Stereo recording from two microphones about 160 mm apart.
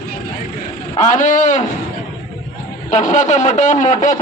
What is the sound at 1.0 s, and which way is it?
Speech, 50° left (ahead or behind).